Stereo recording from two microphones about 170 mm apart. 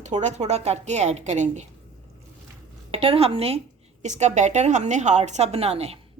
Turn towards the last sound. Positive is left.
turn(degrees=-35)  # may be behind; listen again after turning